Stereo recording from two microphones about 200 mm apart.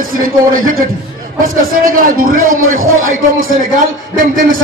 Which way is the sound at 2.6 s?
90° right.